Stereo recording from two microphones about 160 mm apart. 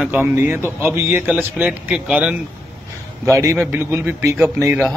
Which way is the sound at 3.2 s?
20° right (ahead or behind).